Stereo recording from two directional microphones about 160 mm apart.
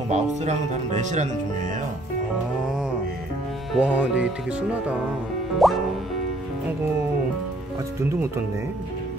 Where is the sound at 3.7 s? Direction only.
10° right (ahead or behind).